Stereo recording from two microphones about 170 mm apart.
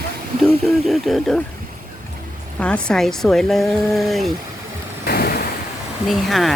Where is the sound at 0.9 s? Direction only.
Centre (ahead or behind).